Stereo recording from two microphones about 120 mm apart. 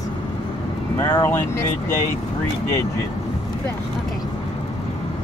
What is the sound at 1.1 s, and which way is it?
Speech, 20° left (ahead or behind).